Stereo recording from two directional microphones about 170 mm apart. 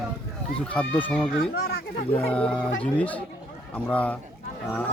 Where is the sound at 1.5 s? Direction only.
70° left (ahead or behind).